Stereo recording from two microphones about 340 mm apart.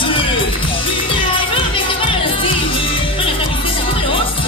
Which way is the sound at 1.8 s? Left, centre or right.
Centre.